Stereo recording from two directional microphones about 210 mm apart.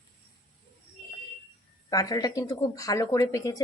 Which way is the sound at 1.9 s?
15° left (ahead or behind).